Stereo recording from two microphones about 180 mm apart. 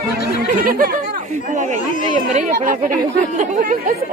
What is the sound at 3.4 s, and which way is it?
Speech, 45° right (ahead or behind).